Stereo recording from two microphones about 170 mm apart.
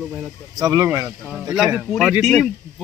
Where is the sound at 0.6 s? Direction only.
20° right (ahead or behind).